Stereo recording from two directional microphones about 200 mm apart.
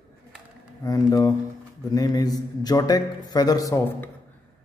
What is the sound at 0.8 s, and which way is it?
A man's voice, 15° left (ahead or behind).